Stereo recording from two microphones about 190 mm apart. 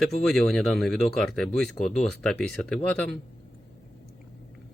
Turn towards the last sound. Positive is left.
turn(degrees=5)  # may be behind; listen again after turning